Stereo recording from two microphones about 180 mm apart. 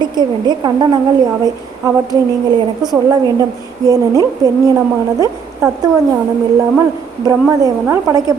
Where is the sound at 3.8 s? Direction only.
20° right (ahead or behind).